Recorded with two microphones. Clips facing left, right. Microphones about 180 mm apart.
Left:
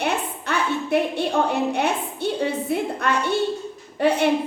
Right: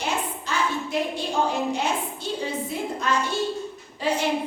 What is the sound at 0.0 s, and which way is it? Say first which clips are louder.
A woman's voice: left 3 dB; 60° left (ahead or behind).